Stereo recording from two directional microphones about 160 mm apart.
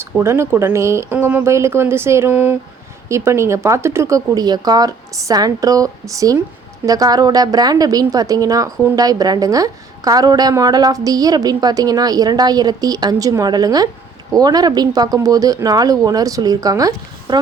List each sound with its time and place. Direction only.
0.2 s a woman's voice: 15° right (ahead or behind)